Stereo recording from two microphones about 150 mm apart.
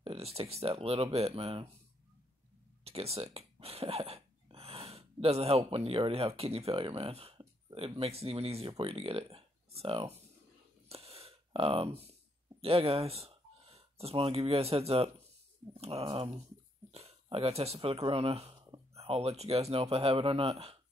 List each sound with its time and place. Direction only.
0.0 s speech: 40° right (ahead or behind)
2.8 s speech: 40° right (ahead or behind)
10.9 s a sound: 40° right (ahead or behind)
12.6 s speech: 40° right (ahead or behind)